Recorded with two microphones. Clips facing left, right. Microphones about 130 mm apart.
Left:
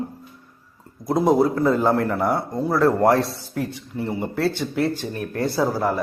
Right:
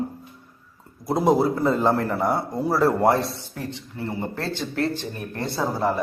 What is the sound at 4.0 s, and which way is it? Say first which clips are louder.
A man's voice: left 6 dB; 15° left (ahead or behind).